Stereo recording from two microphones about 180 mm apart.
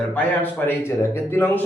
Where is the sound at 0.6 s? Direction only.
15° left (ahead or behind).